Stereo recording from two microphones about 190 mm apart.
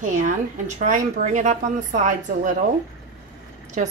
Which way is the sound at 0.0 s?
40° right (ahead or behind).